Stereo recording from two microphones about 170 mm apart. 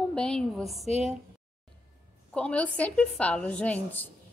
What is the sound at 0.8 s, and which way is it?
Speech, 35° left (ahead or behind).